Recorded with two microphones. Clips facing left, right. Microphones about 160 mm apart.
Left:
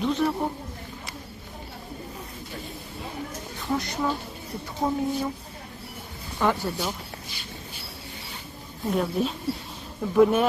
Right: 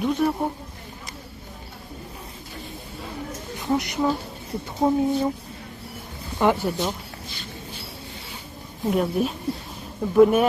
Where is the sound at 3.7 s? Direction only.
20° right (ahead or behind).